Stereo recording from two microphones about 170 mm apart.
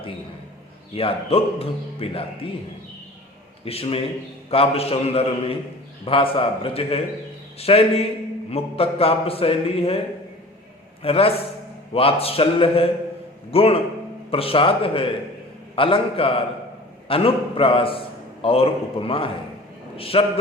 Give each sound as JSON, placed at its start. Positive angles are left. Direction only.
{"t": 0.9, "sound": "a man's voice", "side_deg": 35}
{"t": 3.6, "sound": "a man's voice", "side_deg": 35}
{"t": 11.0, "sound": "a man's voice", "side_deg": 35}